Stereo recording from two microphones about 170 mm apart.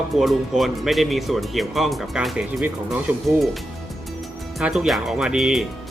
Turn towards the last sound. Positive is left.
turn(degrees=-5)  # may be behind; listen again after turning